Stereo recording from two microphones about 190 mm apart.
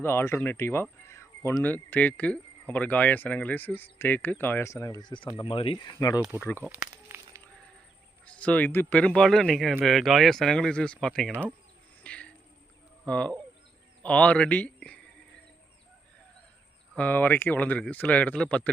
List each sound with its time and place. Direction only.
0.0 s speech: 10° left (ahead or behind)
6.6 s snake: 10° right (ahead or behind)
8.2 s speech: 5° left (ahead or behind)
12.0 s a sound: 5° left (ahead or behind)
13.1 s a man's voice: 5° left (ahead or behind)
16.9 s speech: 10° left (ahead or behind)